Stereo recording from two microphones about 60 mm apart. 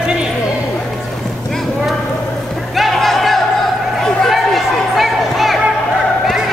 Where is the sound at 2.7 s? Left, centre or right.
Centre.